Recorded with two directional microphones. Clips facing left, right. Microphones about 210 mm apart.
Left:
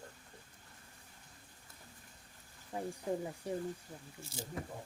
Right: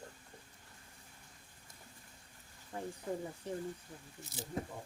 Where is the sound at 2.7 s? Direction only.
15° left (ahead or behind).